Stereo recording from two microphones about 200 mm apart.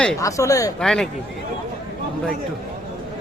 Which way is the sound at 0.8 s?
5° left (ahead or behind).